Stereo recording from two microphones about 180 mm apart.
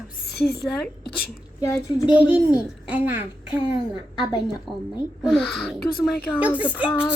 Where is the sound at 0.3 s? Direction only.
60° left (ahead or behind).